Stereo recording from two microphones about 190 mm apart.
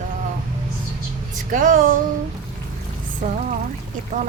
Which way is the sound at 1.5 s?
45° right (ahead or behind).